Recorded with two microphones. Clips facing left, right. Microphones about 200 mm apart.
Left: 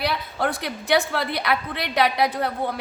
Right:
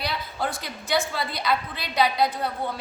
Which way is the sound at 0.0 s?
60° left (ahead or behind).